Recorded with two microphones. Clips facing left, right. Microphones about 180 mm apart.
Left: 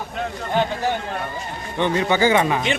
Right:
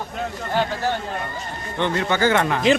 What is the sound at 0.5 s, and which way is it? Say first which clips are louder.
Speech: left 1 dB; 15° left (ahead or behind).